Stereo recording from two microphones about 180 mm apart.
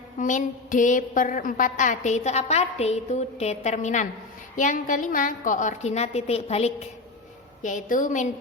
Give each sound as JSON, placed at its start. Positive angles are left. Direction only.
{"t": 0.2, "sound": "a woman's voice", "side_deg": 45}